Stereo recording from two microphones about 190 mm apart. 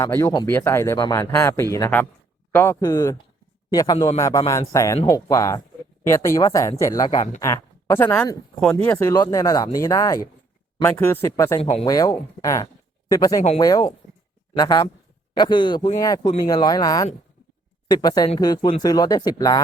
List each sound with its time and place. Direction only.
0.0 s a man's voice: 15° left (ahead or behind)
3.9 s speech: 30° left (ahead or behind)
4.2 s speech: 15° left (ahead or behind)
11.6 s speech: 30° left (ahead or behind)
11.9 s speech: 20° left (ahead or behind)